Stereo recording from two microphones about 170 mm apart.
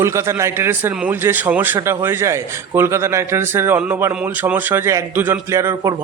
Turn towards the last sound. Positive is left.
turn(degrees=-15)  # may be behind; listen again after turning